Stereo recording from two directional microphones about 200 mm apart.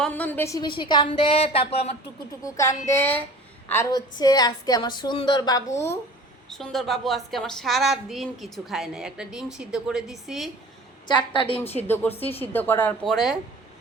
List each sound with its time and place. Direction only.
0.0 s a woman's voice: 10° left (ahead or behind); by 1.9 s 30° left (ahead or behind)
2.4 s a woman's voice: 15° left (ahead or behind)
6.5 s speech: centre (ahead or behind)
11.1 s a woman's voice: 25° left (ahead or behind)
12.4 s a woman's voice: 10° left (ahead or behind)